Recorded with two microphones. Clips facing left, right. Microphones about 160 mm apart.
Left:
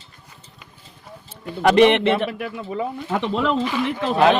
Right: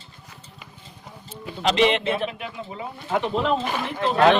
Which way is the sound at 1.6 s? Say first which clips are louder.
Left 6 dB; 55° left (ahead or behind).